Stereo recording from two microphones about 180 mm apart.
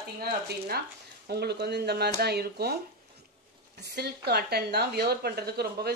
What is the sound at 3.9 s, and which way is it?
A woman's voice, 65° right (ahead or behind).